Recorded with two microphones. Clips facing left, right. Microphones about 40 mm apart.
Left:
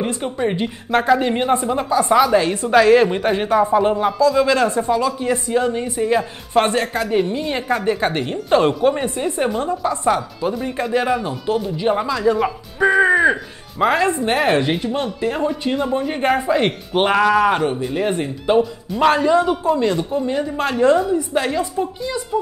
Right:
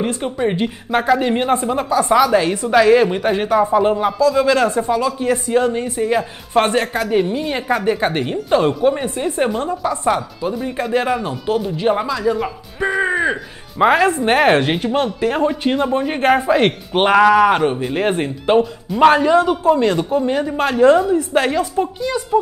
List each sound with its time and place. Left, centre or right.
0.0 s a woman's voice: centre
8.5 s a woman's voice: centre
12.2 s a woman's voice: centre
13.7 s speech: right
15.3 s speech: right
17.0 s speech: centre
17.9 s speech: right
20.6 s speech: centre
21.3 s speech: right